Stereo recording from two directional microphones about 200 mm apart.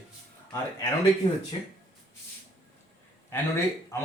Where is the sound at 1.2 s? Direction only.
30° left (ahead or behind).